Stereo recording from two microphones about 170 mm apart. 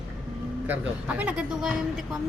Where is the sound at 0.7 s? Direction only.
10° right (ahead or behind).